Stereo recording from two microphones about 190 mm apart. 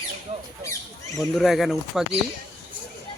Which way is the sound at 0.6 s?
15° left (ahead or behind).